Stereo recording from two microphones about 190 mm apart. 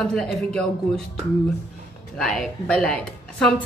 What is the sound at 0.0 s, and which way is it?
A woman's voice, 5° left (ahead or behind).